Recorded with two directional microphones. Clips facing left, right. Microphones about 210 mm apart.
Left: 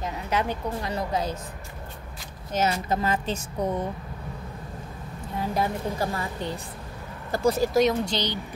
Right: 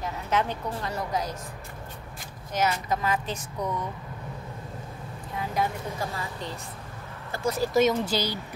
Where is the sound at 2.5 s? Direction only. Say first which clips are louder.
Left 2 dB; 30° left (ahead or behind).